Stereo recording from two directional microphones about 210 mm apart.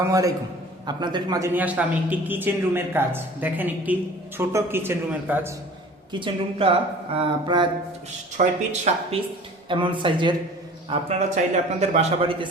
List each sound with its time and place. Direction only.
0.0 s a man's voice: 15° right (ahead or behind)
6.1 s speech: 25° right (ahead or behind)